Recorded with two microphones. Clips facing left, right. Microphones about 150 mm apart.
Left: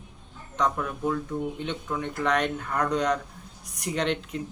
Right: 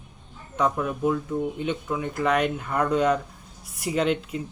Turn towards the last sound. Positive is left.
turn(degrees=-5)  # may be behind; listen again after turning